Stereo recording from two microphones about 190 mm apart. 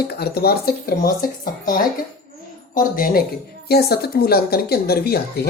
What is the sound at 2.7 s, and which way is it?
A woman's voice, 45° left (ahead or behind).